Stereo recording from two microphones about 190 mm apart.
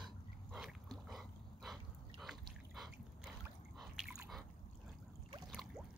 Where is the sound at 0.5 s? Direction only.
Centre (ahead or behind).